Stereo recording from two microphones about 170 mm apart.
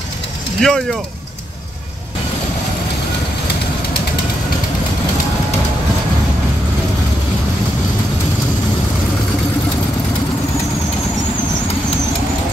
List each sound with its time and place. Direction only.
0.6 s speech: centre (ahead or behind)